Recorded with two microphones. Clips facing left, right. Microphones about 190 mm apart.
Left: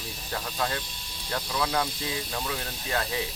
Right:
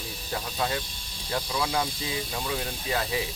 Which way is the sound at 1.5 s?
10° right (ahead or behind).